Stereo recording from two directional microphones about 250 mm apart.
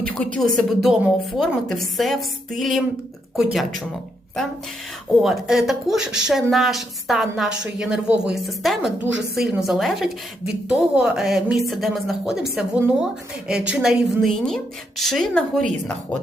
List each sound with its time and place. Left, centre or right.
0.0 s a woman's voice: centre
5.2 s a woman's voice: centre
9.0 s a woman's voice: right
9.4 s a woman's voice: centre